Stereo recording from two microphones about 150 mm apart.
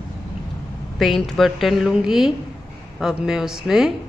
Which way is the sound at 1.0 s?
Centre (ahead or behind).